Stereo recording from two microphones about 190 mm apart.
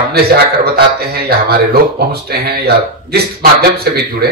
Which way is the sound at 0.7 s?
55° right (ahead or behind).